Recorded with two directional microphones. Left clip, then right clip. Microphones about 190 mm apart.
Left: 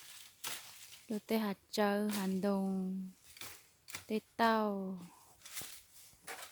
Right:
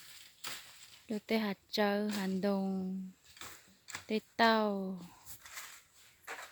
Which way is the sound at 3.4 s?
45° left (ahead or behind).